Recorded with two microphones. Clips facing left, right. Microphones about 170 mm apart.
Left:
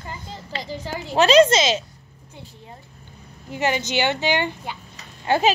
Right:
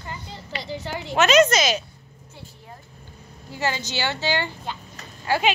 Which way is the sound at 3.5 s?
20° left (ahead or behind).